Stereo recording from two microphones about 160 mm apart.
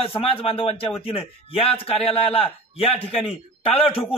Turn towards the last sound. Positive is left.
turn(degrees=35)  # may be behind; listen again after turning